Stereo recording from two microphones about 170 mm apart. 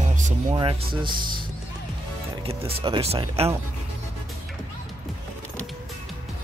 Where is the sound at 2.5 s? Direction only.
35° right (ahead or behind).